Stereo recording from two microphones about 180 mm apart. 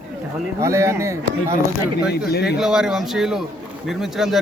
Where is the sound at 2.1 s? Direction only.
65° left (ahead or behind).